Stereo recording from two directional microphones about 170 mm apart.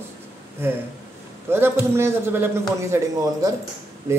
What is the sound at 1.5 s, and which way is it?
A man's voice, 15° right (ahead or behind).